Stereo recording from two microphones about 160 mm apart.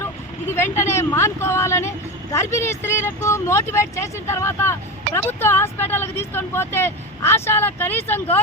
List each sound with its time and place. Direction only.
0.0 s speech: 15° left (ahead or behind)